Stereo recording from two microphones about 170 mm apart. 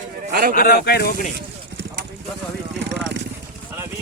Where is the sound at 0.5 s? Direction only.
65° left (ahead or behind).